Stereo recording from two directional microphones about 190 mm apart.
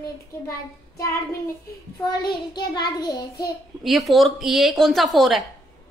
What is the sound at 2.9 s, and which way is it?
Child singing, 20° left (ahead or behind).